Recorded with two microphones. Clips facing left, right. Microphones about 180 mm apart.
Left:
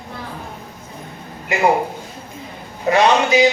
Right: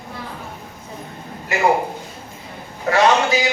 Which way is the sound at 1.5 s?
20° left (ahead or behind).